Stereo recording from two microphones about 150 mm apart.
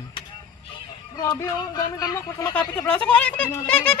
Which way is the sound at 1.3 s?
25° left (ahead or behind).